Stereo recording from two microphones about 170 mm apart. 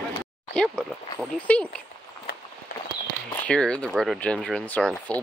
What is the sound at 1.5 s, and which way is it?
Speech, 10° left (ahead or behind).